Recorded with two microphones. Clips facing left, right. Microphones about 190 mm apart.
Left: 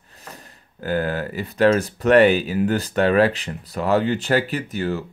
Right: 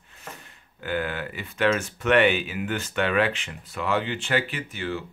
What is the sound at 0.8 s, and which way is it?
Speech, 40° left (ahead or behind).